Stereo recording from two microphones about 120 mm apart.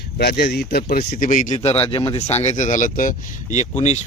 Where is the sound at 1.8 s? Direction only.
45° left (ahead or behind).